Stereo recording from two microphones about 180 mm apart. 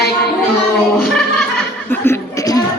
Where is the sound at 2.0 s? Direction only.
20° left (ahead or behind).